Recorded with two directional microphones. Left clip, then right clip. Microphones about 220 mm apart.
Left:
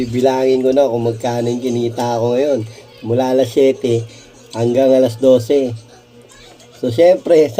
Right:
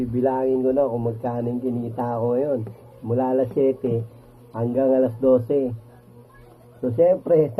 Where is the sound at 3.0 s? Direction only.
30° left (ahead or behind).